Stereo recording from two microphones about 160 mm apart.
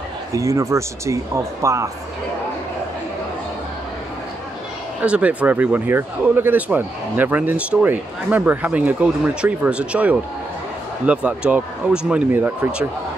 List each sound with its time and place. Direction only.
0.3 s speech: 20° right (ahead or behind)
5.0 s speech: 10° right (ahead or behind)